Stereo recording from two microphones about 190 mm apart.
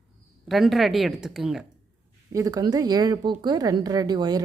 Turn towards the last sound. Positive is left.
turn(degrees=-20)  # may be behind; listen again after turning